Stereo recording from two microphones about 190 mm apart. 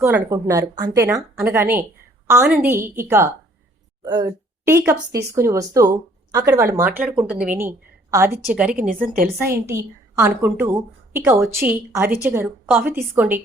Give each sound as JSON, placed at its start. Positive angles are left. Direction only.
{"t": 0.0, "sound": "a woman's voice", "side_deg": -15}
{"t": 9.0, "sound": "a woman's voice", "side_deg": -50}
{"t": 9.4, "sound": "a woman's voice", "side_deg": -15}